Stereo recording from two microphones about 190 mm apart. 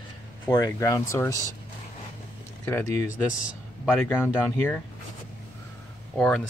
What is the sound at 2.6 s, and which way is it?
Speech, 15° left (ahead or behind).